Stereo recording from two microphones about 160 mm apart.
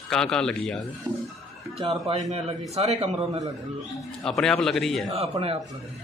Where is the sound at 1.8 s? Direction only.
35° right (ahead or behind).